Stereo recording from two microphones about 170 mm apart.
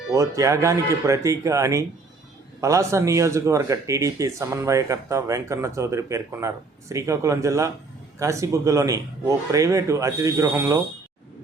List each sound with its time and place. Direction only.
0.1 s speech: 20° right (ahead or behind)